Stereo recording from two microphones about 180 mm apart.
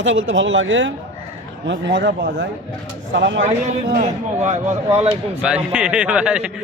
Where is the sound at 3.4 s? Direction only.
45° right (ahead or behind).